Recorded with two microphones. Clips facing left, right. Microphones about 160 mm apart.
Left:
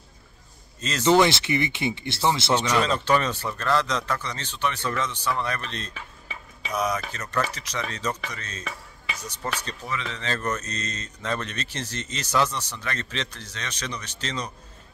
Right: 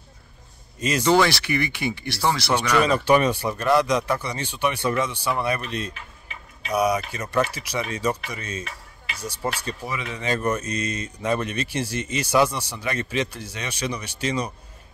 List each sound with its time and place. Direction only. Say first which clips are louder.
0.7 s speech: right 1 dB; 10° right (ahead or behind)
1.1 s speech: left 1 dB; 20° left (ahead or behind)
2.8 s speech: right 4 dB; 10° right (ahead or behind)